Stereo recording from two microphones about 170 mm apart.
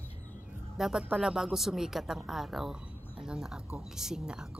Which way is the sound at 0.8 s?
5° right (ahead or behind).